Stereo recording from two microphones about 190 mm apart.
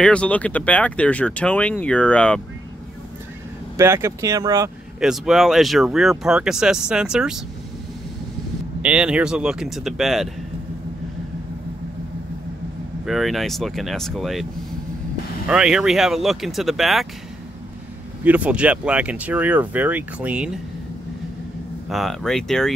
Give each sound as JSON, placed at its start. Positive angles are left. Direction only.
{"t": 0.0, "sound": "speech", "side_deg": 5}
{"t": 3.7, "sound": "speech", "side_deg": -15}
{"t": 5.0, "sound": "speech", "side_deg": 0}
{"t": 8.8, "sound": "speech", "side_deg": -5}
{"t": 13.0, "sound": "speech", "side_deg": 0}
{"t": 18.2, "sound": "speech", "side_deg": -10}
{"t": 21.8, "sound": "speech", "side_deg": 0}